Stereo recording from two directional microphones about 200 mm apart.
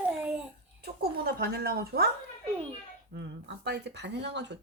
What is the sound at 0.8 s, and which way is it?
Speech, 55° right (ahead or behind).